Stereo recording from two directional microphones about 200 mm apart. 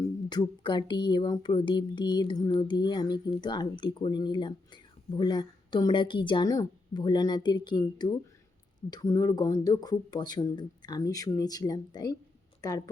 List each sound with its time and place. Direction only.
0.3 s a woman's voice: 20° left (ahead or behind)